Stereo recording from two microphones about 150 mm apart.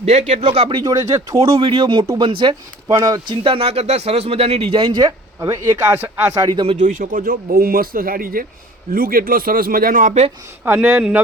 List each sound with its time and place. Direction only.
0.0 s speech: 50° right (ahead or behind)
0.9 s speech: 25° right (ahead or behind)
1.4 s speech: 40° right (ahead or behind)
2.8 s speech: 20° right (ahead or behind)
3.4 s speech: 40° right (ahead or behind); by 6.5 s 15° right (ahead or behind)
6.5 s speech: 35° right (ahead or behind)
6.7 s speech: 60° right (ahead or behind)
10.6 s speech: 10° right (ahead or behind)